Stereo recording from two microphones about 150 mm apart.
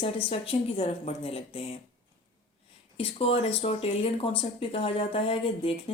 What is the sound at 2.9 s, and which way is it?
Speech, 40° left (ahead or behind).